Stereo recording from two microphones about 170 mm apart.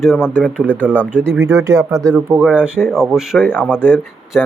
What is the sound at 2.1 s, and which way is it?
Speech, 10° right (ahead or behind).